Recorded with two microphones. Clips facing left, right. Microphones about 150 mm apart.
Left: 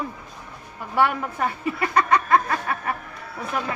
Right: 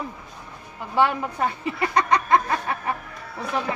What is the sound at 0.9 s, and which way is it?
A woman's voice, 20° right (ahead or behind).